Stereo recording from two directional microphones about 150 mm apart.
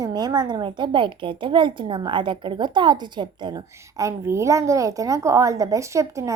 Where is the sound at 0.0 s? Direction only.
25° right (ahead or behind).